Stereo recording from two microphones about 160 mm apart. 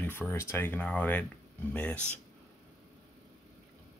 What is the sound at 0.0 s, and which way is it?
Speech, 15° left (ahead or behind).